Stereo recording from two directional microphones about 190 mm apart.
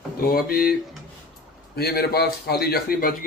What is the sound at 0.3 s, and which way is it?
Speech, 50° left (ahead or behind).